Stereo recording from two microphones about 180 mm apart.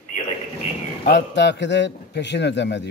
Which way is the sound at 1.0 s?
75° left (ahead or behind).